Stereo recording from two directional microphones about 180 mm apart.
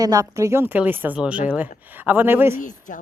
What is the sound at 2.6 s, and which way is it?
Speech, 45° left (ahead or behind).